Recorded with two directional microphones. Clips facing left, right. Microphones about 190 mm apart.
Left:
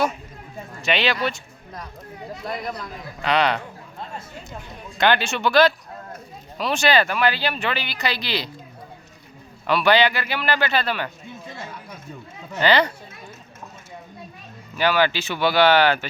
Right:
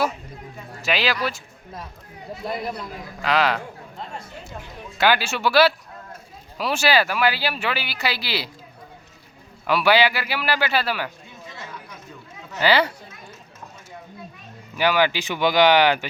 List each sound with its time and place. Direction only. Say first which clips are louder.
0.8 s speech: left 1 dB; centre (ahead or behind)
4.9 s speech: even; 5° right (ahead or behind)
9.6 s speech: even; 10° right (ahead or behind)
11.4 s chatter: even; 50° left (ahead or behind)
12.5 s speech: left 1 dB; 5° right (ahead or behind)
14.8 s speech: even; 15° right (ahead or behind)